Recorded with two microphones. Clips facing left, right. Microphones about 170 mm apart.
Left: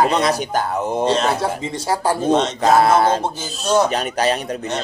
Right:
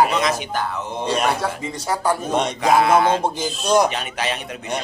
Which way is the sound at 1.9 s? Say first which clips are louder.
Left 2 dB; 30° left (ahead or behind).